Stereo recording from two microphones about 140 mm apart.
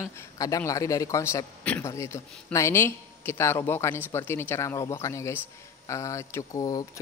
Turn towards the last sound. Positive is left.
turn(degrees=25)  # may be behind; listen again after turning